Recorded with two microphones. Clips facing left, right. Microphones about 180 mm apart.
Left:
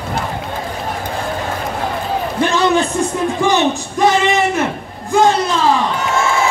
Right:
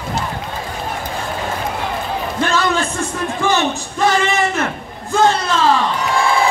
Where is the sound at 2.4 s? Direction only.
20° left (ahead or behind).